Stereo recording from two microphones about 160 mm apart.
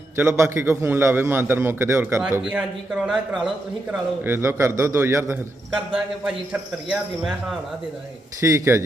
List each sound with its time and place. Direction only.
0.2 s a man's voice: 15° right (ahead or behind)
2.4 s speech: 5° right (ahead or behind)
4.2 s a man's voice: 15° right (ahead or behind)
5.9 s speech: 5° right (ahead or behind)
8.4 s speech: 20° right (ahead or behind)